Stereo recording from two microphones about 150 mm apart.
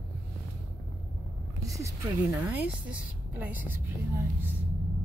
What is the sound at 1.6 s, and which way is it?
A woman's voice, 20° right (ahead or behind).